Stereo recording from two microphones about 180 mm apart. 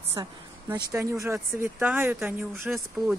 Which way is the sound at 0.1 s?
20° right (ahead or behind).